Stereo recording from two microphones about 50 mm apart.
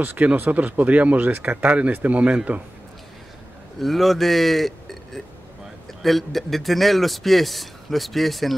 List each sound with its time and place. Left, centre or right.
0.4 s speech: right
3.8 s a man's voice: centre